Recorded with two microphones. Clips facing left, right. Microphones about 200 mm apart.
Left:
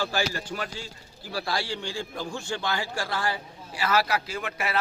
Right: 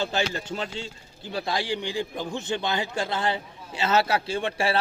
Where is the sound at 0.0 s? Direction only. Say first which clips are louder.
Right 1 dB; 20° right (ahead or behind).